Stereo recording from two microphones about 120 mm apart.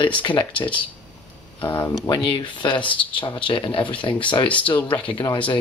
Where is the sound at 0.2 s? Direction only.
45° left (ahead or behind).